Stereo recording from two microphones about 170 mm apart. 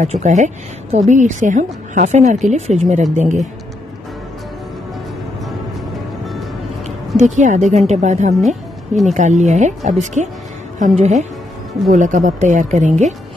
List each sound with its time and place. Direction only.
0.0 s speech: 40° right (ahead or behind)
7.2 s speech: 45° right (ahead or behind)